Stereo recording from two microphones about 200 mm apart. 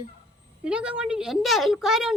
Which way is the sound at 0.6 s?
5° right (ahead or behind).